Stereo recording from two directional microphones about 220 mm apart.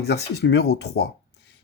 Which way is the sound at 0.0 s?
50° left (ahead or behind).